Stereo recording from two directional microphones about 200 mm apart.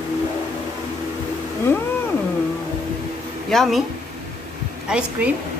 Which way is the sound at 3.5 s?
Centre (ahead or behind).